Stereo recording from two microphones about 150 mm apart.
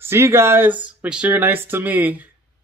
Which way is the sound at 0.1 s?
15° right (ahead or behind).